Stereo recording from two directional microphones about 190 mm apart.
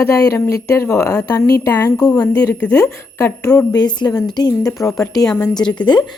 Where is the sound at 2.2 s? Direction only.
5° left (ahead or behind); by 6.2 s 25° left (ahead or behind).